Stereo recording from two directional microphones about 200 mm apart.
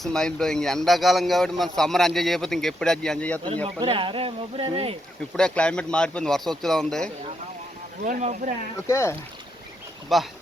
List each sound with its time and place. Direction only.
0.0 s speech: 5° left (ahead or behind)
3.8 s speech: 25° right (ahead or behind)
5.4 s speech: 5° left (ahead or behind)
8.0 s speech: 35° right (ahead or behind)
8.7 s speech: 15° left (ahead or behind)
10.1 s speech: centre (ahead or behind)